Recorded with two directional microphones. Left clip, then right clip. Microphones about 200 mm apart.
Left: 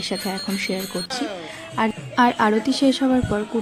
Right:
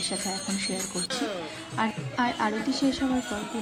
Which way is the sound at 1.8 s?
40° left (ahead or behind).